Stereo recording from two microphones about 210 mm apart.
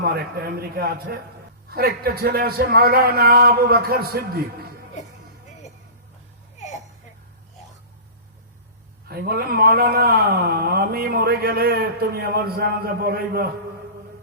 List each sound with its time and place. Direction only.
0.0 s a man's voice: 50° right (ahead or behind)
9.0 s a man's voice: 45° right (ahead or behind)